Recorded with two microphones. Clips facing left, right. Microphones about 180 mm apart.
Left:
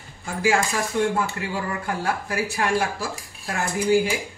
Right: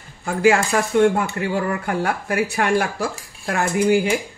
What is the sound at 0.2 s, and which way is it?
Speech, 65° right (ahead or behind).